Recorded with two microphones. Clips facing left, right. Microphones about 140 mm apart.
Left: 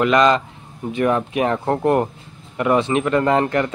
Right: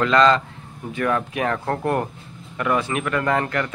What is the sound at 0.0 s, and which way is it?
A man's voice, 15° left (ahead or behind).